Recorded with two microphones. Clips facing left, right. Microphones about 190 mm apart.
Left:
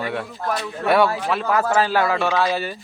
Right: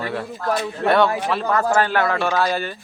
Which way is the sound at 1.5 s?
5° left (ahead or behind).